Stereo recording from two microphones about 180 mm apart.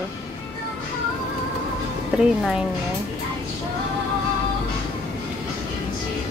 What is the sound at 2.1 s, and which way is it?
Speech, 5° right (ahead or behind).